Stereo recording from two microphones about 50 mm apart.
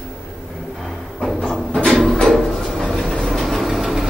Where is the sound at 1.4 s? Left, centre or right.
Centre.